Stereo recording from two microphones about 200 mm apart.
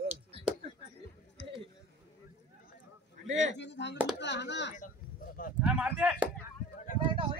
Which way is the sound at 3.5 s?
60° left (ahead or behind).